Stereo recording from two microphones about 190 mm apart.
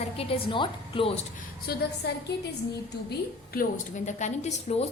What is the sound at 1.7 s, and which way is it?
Speech, 55° left (ahead or behind).